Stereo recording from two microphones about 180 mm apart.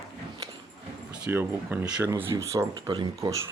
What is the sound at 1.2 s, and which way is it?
Speech, 10° right (ahead or behind).